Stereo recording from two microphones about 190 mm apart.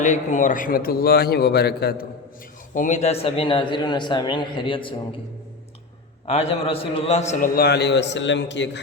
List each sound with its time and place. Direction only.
0.0 s a man's voice: 40° left (ahead or behind); by 2.0 s 55° left (ahead or behind)
2.7 s a man's voice: 40° left (ahead or behind)
6.2 s a man's voice: 30° left (ahead or behind); by 8.8 s 65° left (ahead or behind)